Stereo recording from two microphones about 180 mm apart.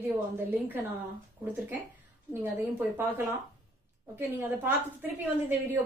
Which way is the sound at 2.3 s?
10° right (ahead or behind).